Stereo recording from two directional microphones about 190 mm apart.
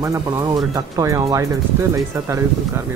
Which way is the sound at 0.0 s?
20° right (ahead or behind).